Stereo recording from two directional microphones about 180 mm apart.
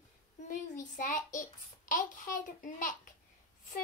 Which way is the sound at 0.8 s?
45° left (ahead or behind).